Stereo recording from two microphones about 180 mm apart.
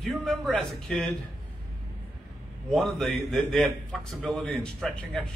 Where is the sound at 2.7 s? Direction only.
Centre (ahead or behind).